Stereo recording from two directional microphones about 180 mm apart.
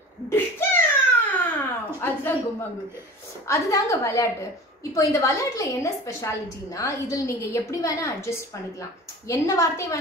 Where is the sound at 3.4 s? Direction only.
15° left (ahead or behind).